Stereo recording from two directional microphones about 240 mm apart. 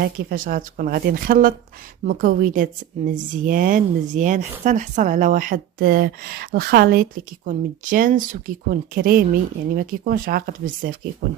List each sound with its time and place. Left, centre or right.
0.0 s speech: right